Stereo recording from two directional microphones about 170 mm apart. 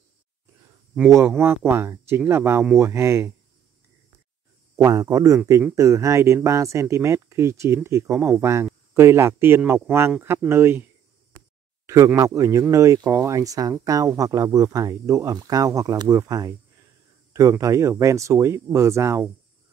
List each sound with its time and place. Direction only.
0.9 s speech: 15° right (ahead or behind)
4.7 s speech: 20° right (ahead or behind)
11.8 s speech: 20° right (ahead or behind)